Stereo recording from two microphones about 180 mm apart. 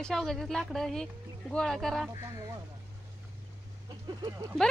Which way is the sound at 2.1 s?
20° right (ahead or behind).